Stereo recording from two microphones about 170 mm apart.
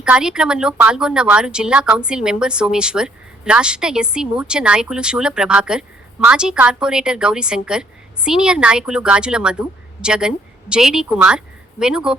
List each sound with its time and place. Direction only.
0.0 s speech: 5° right (ahead or behind)